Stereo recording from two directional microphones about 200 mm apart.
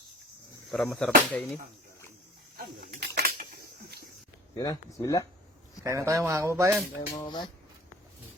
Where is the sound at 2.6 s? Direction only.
50° right (ahead or behind).